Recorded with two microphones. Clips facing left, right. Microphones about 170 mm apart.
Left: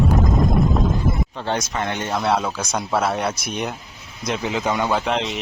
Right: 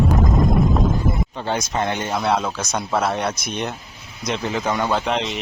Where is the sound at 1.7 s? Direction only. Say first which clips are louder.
Right 2 dB; 20° right (ahead or behind).